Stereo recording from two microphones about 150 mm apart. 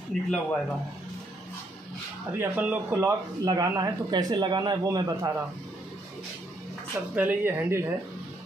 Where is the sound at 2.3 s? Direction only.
10° right (ahead or behind).